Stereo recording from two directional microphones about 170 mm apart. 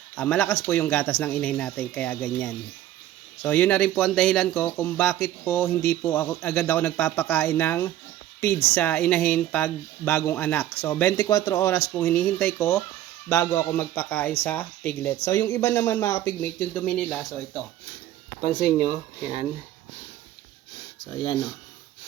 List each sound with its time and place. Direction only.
0.2 s speech: 10° left (ahead or behind)
18.6 s speech: 35° right (ahead or behind)